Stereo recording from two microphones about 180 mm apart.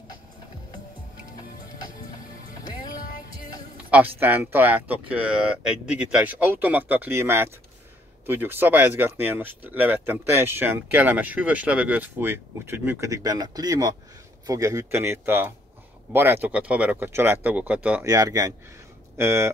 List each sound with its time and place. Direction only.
3.9 s speech: 10° right (ahead or behind)
18.0 s speech: 20° right (ahead or behind)